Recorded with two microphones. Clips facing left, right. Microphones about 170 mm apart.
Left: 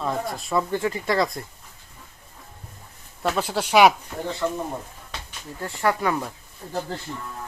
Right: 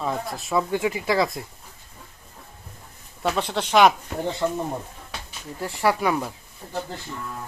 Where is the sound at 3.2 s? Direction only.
Centre (ahead or behind).